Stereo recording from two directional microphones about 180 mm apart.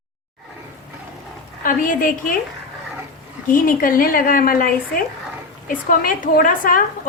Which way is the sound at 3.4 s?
50° left (ahead or behind).